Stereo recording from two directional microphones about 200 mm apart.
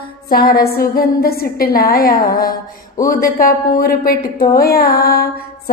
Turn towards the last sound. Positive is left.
turn(degrees=50)  # may be behind; listen again after turning